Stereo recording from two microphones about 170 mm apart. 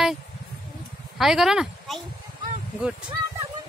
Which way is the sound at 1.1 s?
Centre (ahead or behind).